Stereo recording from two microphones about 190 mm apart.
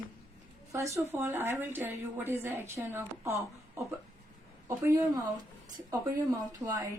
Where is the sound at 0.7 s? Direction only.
15° right (ahead or behind).